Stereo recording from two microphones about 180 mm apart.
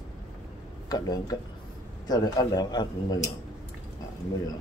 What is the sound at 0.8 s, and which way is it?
Speech, 20° left (ahead or behind).